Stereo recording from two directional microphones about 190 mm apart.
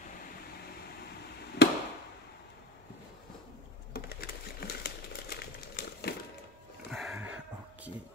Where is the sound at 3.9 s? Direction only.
55° left (ahead or behind).